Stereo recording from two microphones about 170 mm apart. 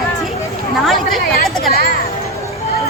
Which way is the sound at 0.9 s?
Centre (ahead or behind).